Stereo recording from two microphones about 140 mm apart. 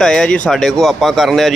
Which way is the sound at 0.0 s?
5° left (ahead or behind).